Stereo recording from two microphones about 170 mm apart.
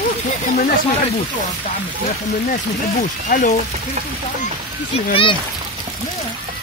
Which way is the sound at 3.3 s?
60° left (ahead or behind).